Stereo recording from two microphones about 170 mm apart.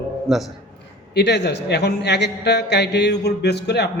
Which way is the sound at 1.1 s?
85° left.